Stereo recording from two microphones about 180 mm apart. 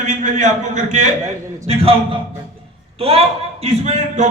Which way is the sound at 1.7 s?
35° right (ahead or behind).